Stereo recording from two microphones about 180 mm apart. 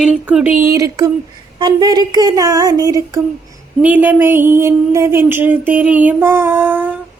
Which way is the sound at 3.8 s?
10° right (ahead or behind).